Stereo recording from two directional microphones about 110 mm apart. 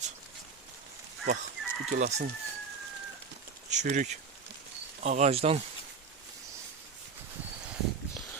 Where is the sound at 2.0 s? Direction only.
90° right.